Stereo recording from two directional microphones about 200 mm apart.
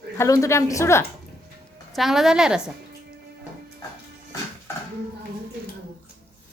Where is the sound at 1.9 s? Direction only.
Centre (ahead or behind).